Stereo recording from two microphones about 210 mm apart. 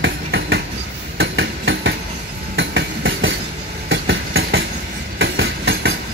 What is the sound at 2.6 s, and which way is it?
Train, 60° right (ahead or behind).